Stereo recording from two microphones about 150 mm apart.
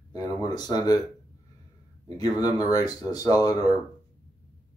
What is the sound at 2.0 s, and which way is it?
Speech, 25° left (ahead or behind).